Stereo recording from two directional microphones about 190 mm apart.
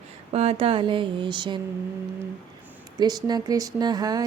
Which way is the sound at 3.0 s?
20° right (ahead or behind).